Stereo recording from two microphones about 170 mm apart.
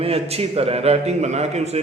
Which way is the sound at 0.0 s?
35° right (ahead or behind).